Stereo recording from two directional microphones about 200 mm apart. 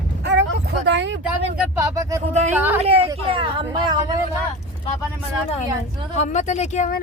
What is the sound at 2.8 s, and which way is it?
Speech, 30° right (ahead or behind).